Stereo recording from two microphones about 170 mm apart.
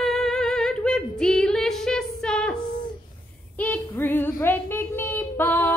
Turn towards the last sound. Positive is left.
turn(degrees=10)  # may be behind; listen again after turning